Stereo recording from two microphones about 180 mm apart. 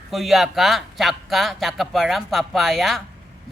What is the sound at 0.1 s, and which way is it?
Speech, centre (ahead or behind).